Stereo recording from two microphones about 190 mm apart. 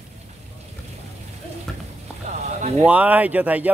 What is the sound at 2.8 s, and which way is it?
Speech, 5° right (ahead or behind).